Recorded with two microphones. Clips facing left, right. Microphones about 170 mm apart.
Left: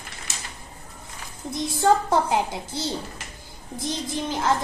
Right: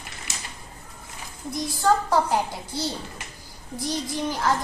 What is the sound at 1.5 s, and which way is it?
A child's voice, 25° left (ahead or behind).